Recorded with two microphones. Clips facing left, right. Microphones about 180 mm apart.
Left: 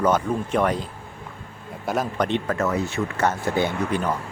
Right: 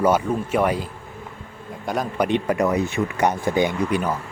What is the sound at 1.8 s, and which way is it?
Speech, centre (ahead or behind).